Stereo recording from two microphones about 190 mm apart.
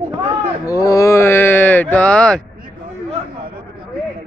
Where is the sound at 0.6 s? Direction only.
15° left (ahead or behind).